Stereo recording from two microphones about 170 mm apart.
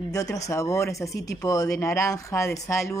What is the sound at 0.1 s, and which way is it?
Speech, 20° left (ahead or behind).